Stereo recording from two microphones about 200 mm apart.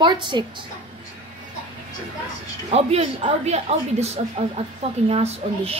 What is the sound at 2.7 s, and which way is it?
Speech, 30° right (ahead or behind).